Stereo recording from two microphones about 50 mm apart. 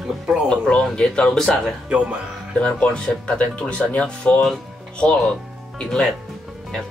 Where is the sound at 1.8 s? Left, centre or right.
Centre.